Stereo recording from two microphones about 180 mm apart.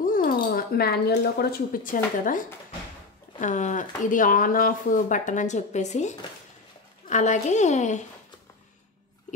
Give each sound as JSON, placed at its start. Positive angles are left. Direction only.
{"t": 0.0, "sound": "a woman's voice", "side_deg": 50}